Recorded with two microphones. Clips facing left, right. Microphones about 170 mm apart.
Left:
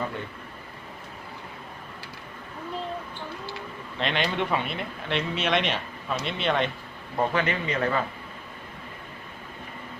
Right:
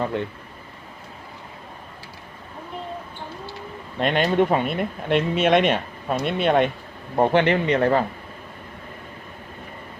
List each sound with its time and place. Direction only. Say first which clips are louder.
3.9 s speech: right 8 dB; 50° right (ahead or behind)
7.2 s a man's voice: right 8 dB; 65° right (ahead or behind)
7.8 s speech: right 3 dB; 35° right (ahead or behind)